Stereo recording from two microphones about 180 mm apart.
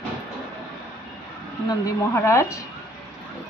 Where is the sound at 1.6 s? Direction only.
15° left (ahead or behind).